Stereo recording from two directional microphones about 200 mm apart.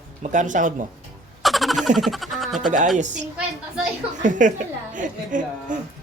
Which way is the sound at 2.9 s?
35° right (ahead or behind).